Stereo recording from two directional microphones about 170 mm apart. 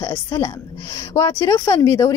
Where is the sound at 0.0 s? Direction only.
20° left (ahead or behind).